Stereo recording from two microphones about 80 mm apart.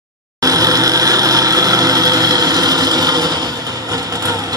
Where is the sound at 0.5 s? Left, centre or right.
Right.